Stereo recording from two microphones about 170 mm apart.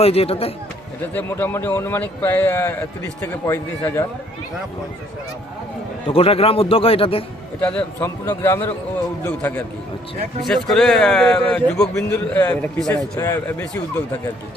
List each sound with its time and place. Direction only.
0.0 s a man's voice: 35° left (ahead or behind)
1.1 s a man's voice: 10° left (ahead or behind)
6.1 s a man's voice: 35° left (ahead or behind)
7.6 s a man's voice: 10° left (ahead or behind)
10.4 s a man's voice: centre (ahead or behind)